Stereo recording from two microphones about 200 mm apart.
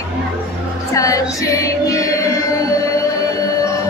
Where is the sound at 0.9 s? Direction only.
15° left (ahead or behind).